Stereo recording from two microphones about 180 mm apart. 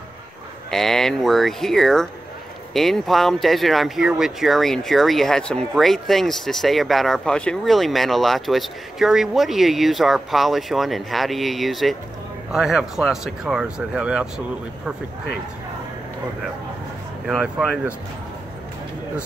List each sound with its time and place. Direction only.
0.7 s speech: centre (ahead or behind)
17.3 s speech: 5° right (ahead or behind)